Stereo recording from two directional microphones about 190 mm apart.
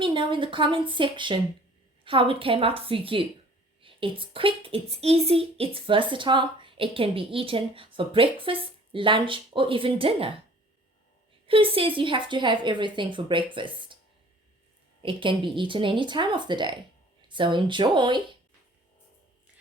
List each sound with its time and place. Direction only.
0.0 s a woman's voice: 25° right (ahead or behind)
11.4 s a woman's voice: 30° right (ahead or behind)
15.0 s a woman's voice: 25° right (ahead or behind)